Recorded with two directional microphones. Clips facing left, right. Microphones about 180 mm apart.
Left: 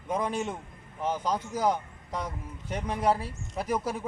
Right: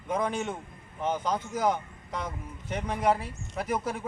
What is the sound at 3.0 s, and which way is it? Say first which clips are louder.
Speech: even; 35° left (ahead or behind).